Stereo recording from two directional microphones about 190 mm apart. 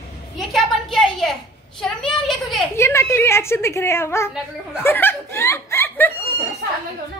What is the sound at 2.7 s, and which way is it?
Hands, 15° left (ahead or behind).